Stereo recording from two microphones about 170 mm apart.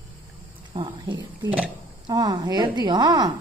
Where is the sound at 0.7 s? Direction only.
30° right (ahead or behind).